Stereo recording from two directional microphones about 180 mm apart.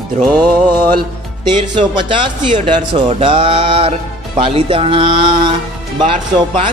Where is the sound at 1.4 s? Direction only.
25° right (ahead or behind).